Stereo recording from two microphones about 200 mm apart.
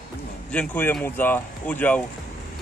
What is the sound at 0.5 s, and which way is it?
Speech, 5° left (ahead or behind).